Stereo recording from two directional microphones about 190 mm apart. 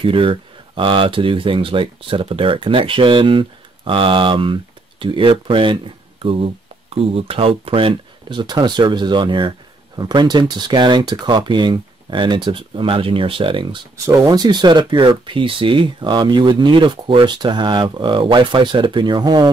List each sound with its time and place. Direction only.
0.0 s speech: 25° right (ahead or behind)